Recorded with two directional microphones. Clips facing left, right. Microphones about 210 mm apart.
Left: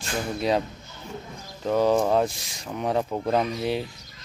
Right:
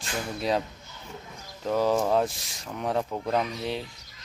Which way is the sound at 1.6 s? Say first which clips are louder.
Left 3 dB; centre (ahead or behind).